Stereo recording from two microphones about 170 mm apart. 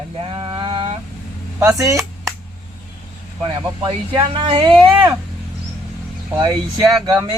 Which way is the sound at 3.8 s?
30° right (ahead or behind).